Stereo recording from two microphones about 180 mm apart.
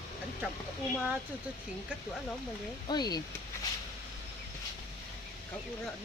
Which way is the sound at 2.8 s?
25° left (ahead or behind).